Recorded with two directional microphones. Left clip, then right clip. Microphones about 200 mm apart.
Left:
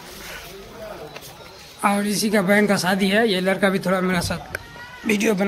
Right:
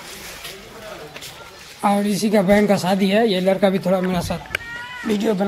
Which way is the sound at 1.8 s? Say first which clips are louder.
Right 2 dB; 15° right (ahead or behind).